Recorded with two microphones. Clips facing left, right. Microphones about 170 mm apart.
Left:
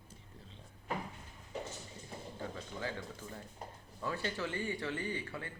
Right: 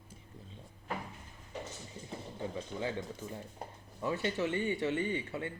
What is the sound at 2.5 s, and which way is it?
Speech, 20° right (ahead or behind).